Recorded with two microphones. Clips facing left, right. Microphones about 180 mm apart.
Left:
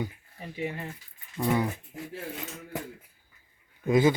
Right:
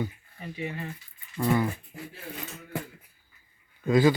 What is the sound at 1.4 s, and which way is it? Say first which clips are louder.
Speech: right 1 dB; 20° left (ahead or behind).